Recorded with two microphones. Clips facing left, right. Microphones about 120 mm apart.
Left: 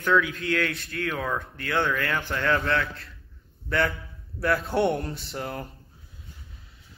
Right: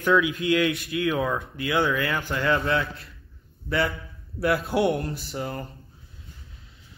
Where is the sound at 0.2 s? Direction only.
15° right (ahead or behind).